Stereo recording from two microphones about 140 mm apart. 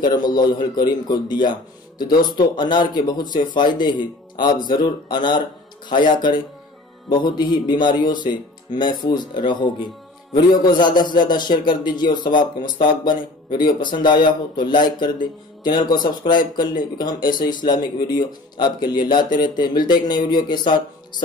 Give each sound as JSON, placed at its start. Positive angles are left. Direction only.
{"t": 0.0, "sound": "speech", "side_deg": 30}